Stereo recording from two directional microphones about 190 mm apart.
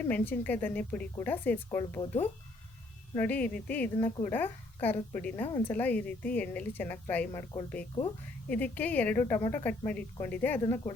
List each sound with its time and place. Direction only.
0.0 s a woman's voice: 10° left (ahead or behind)
3.2 s a woman's voice: 10° left (ahead or behind)